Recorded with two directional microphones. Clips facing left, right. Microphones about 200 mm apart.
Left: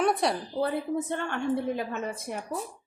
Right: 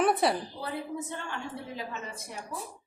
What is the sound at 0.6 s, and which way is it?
A woman's voice, 55° left (ahead or behind).